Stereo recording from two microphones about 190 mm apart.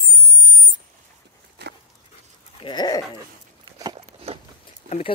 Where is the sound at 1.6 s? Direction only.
60° right (ahead or behind).